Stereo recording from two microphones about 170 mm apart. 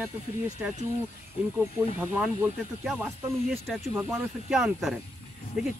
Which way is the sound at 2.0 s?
10° right (ahead or behind).